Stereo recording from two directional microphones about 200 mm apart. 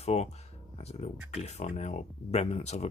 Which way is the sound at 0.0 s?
35° left (ahead or behind).